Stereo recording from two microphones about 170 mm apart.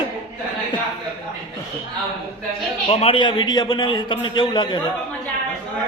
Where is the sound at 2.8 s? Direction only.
35° left (ahead or behind).